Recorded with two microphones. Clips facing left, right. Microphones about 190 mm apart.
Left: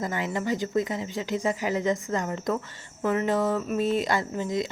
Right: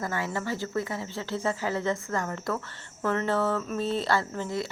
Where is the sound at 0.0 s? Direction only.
15° left (ahead or behind).